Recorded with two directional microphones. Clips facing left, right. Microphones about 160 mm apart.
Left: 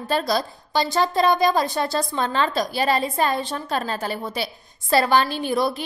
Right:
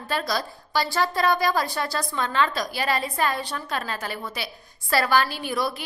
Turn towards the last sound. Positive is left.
turn(degrees=25)  # may be behind; listen again after turning